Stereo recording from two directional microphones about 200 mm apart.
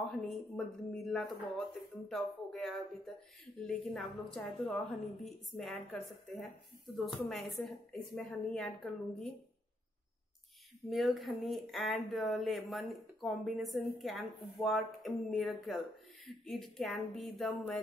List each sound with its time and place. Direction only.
0.1 s a woman's voice: centre (ahead or behind)
10.9 s a woman's voice: centre (ahead or behind)